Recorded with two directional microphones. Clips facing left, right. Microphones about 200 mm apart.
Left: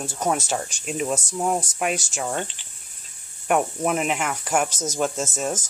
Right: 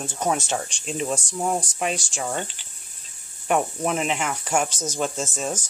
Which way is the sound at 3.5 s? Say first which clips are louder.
Left 1 dB; 5° left (ahead or behind).